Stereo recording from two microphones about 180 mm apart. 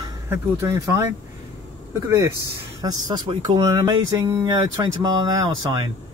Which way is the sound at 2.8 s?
25° right (ahead or behind).